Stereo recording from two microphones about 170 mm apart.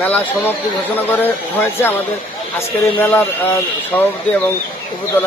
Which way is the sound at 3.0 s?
10° left (ahead or behind).